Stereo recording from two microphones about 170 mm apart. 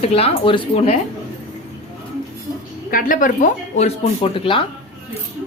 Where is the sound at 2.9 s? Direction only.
55° left (ahead or behind); by 4.7 s 30° left (ahead or behind).